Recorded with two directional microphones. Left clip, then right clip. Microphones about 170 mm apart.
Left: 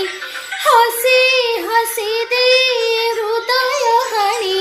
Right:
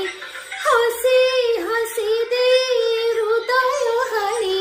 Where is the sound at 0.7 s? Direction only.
20° right (ahead or behind).